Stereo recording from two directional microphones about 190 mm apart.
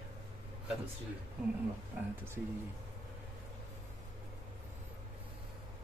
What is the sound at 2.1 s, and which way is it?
Speech, 10° right (ahead or behind).